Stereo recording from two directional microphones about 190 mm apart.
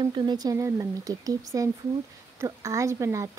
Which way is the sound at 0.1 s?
20° right (ahead or behind).